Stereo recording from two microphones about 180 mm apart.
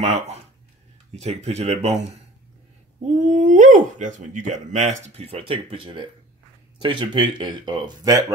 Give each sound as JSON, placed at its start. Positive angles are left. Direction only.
{"t": 0.0, "sound": "speech", "side_deg": -35}
{"t": 3.3, "sound": "speech", "side_deg": -45}